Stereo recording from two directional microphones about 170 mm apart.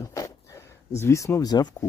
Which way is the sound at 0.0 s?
20° left (ahead or behind).